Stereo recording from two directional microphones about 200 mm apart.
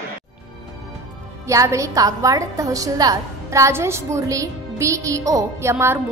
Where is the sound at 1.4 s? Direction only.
15° right (ahead or behind).